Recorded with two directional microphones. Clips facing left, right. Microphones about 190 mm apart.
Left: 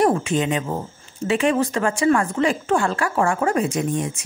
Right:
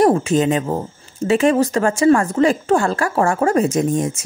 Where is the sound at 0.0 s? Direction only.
40° right (ahead or behind).